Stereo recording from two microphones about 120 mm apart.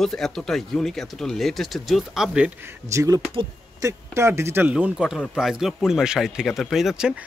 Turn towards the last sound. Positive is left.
turn(degrees=-5)  # may be behind; listen again after turning